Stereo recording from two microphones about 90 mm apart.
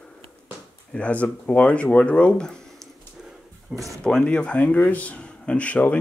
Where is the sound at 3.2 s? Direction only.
5° right (ahead or behind).